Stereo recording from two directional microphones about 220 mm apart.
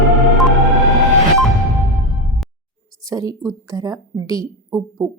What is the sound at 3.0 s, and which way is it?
A woman's voice, 15° right (ahead or behind).